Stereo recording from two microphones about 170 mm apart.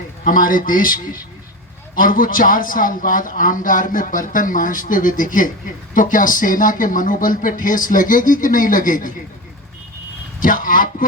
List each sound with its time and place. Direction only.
0.3 s a man's voice: 55° left (ahead or behind)
10.4 s a man's voice: 55° left (ahead or behind)